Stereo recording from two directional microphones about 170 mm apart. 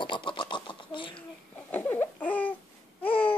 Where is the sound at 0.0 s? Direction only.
30° left (ahead or behind).